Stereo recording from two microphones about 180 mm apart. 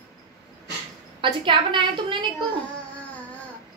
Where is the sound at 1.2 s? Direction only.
25° right (ahead or behind).